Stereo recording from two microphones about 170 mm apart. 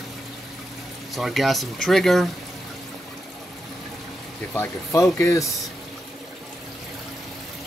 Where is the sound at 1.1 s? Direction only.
Centre (ahead or behind).